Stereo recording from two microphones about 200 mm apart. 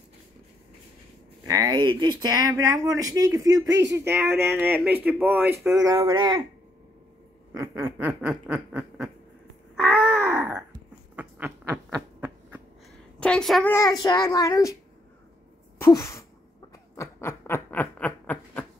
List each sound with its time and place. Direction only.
1.4 s speech: 20° right (ahead or behind)
7.5 s speech: 15° right (ahead or behind)
9.8 s a sound: centre (ahead or behind)
13.2 s a woman's voice: 5° left (ahead or behind)
14.0 s a child's voice: 20° left (ahead or behind)
15.8 s a sound: 15° left (ahead or behind)